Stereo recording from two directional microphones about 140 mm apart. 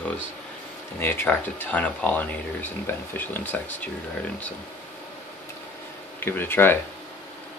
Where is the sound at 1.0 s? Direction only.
15° left (ahead or behind).